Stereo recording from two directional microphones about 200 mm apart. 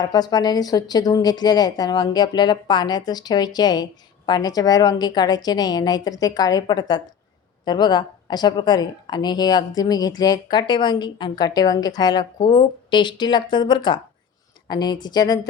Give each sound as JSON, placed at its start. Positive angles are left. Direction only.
{"t": 0.0, "sound": "a woman's voice", "side_deg": 20}